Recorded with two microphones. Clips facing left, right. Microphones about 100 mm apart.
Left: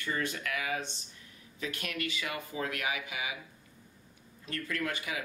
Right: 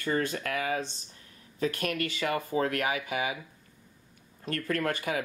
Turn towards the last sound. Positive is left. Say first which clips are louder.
# right 6 dB
turn(degrees=-45)  # may be behind; listen again after turning